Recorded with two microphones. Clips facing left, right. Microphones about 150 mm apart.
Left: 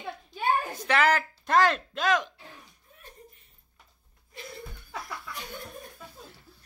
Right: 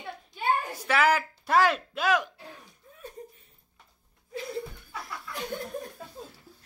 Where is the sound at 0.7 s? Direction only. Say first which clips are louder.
Right 1 dB; 5° right (ahead or behind).